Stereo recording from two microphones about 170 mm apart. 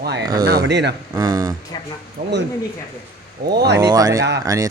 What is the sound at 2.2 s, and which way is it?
Speech, 50° right (ahead or behind).